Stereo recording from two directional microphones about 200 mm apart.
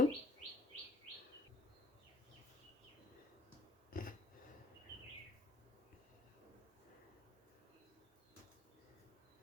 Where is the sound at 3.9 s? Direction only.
45° left (ahead or behind).